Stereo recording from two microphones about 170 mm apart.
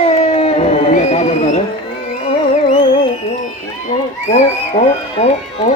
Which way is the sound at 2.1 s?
40° left (ahead or behind).